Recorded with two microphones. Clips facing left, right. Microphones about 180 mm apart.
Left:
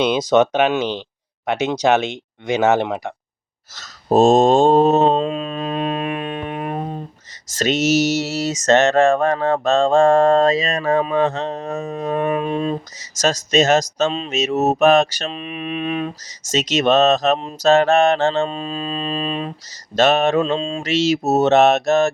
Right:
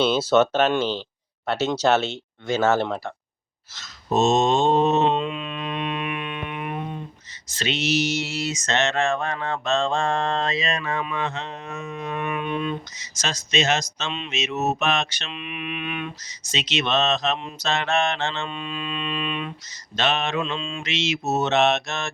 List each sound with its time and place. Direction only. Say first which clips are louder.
0.0 s speech: left 3 dB; 15° left (ahead or behind)
3.8 s mantra: left 7 dB; 45° left (ahead or behind)